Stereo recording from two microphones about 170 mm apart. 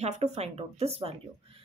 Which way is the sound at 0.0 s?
40° right (ahead or behind).